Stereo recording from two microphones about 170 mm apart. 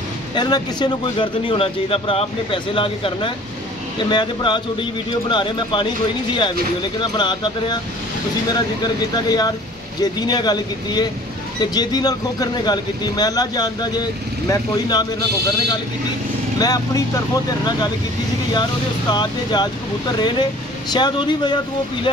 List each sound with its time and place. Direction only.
0.3 s speech: 25° left (ahead or behind)
16.5 s speech: 20° left (ahead or behind)